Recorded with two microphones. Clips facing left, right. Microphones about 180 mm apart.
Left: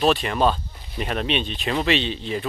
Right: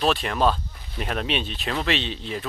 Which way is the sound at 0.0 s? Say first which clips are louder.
Left 2 dB; centre (ahead or behind).